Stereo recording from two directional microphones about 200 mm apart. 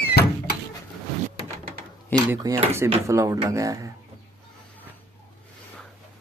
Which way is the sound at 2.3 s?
15° right (ahead or behind).